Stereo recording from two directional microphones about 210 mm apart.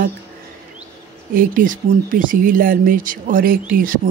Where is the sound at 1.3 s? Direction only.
40° right (ahead or behind).